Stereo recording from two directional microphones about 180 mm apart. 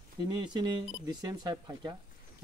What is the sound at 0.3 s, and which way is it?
Speech, 25° right (ahead or behind).